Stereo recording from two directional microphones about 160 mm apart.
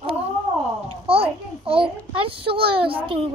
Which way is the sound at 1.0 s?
35° right (ahead or behind).